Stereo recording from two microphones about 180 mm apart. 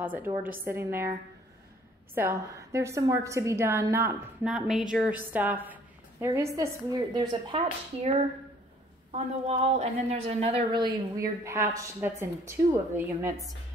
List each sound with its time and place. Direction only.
0.0 s a woman's voice: 10° right (ahead or behind)
2.1 s a woman's voice: 15° right (ahead or behind)
4.5 s a woman's voice: centre (ahead or behind); by 7.7 s 30° right (ahead or behind)
9.1 s a woman's voice: 35° right (ahead or behind); by 13.3 s 15° right (ahead or behind)